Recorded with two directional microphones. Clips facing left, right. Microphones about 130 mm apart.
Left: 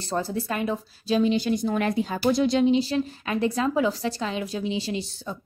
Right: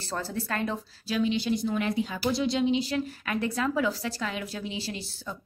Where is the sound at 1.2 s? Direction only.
45° left (ahead or behind).